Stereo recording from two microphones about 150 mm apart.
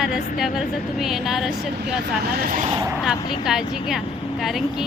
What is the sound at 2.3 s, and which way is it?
Speech, 80° right.